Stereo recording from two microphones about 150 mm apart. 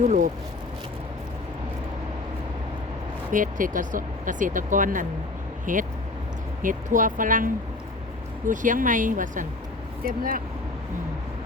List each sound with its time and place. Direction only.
0.0 s speech: 50° right (ahead or behind)
3.3 s speech: 60° right (ahead or behind)
10.0 s speech: 70° right (ahead or behind)